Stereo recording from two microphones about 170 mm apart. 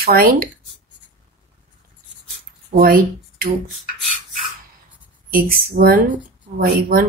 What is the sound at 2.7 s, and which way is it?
Speech, 60° right (ahead or behind).